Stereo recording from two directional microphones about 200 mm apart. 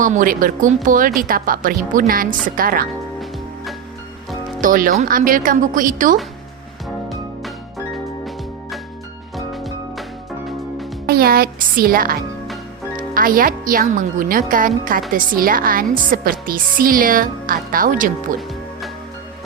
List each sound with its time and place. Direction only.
0.0 s a woman's voice: 40° right (ahead or behind)
4.6 s a woman's voice: 45° right (ahead or behind)
9.3 s music: centre (ahead or behind)
11.0 s a woman's voice: 50° right (ahead or behind)